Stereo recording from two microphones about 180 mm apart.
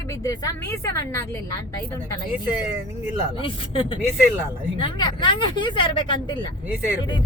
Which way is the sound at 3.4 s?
30° left (ahead or behind).